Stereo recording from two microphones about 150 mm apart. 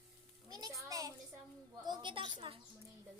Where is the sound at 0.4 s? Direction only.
25° right (ahead or behind).